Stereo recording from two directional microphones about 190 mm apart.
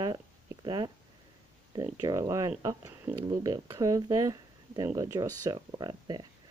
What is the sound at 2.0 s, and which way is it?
Speech, 20° right (ahead or behind).